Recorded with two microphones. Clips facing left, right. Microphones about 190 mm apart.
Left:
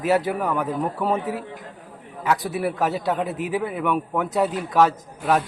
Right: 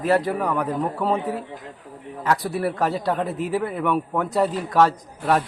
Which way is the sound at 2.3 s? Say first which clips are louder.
Even; 5° left (ahead or behind).